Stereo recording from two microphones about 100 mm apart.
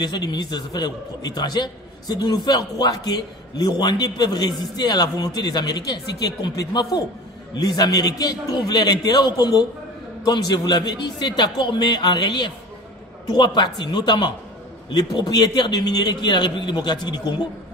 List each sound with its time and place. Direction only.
0.0 s a man's voice: 45° left (ahead or behind)